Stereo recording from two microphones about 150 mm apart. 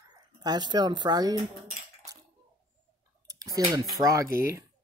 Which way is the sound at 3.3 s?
25° right (ahead or behind).